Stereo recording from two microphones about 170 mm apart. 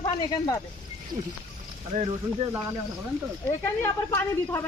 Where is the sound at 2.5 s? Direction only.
15° right (ahead or behind).